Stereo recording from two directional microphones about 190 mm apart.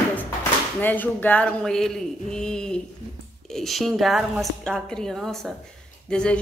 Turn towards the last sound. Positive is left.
turn(degrees=5)  # may be behind; listen again after turning